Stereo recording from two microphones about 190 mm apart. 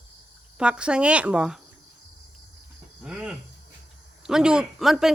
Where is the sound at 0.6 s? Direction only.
5° right (ahead or behind).